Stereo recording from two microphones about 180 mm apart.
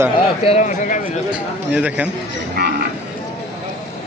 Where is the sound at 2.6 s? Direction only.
65° right (ahead or behind).